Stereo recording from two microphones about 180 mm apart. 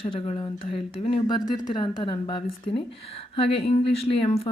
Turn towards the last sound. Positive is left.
turn(degrees=35)  # may be behind; listen again after turning